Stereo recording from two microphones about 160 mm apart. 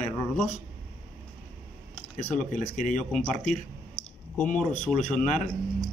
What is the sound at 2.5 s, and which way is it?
Speech, 50° left (ahead or behind).